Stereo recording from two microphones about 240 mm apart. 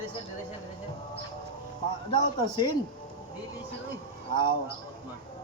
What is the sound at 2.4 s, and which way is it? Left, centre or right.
Speech, centre.